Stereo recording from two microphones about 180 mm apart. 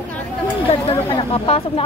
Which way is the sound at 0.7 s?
30° left (ahead or behind).